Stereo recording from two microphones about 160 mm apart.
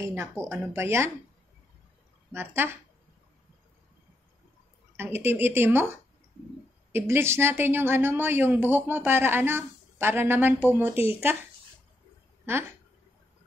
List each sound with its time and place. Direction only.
0.0 s speech: 15° right (ahead or behind)
2.3 s speech: 15° right (ahead or behind)
4.9 s speech: 15° right (ahead or behind)
6.9 s speech: 15° right (ahead or behind)